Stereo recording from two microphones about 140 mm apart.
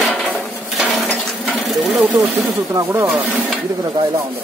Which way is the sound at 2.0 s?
10° right (ahead or behind).